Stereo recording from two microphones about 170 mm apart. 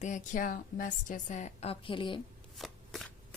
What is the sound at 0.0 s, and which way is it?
A woman's voice, 45° left (ahead or behind).